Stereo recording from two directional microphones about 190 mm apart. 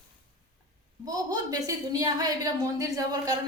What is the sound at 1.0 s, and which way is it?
A woman's voice, 20° right (ahead or behind).